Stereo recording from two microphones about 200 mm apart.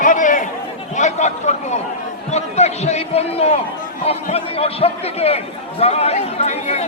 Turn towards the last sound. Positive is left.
turn(degrees=30)  # may be behind; listen again after turning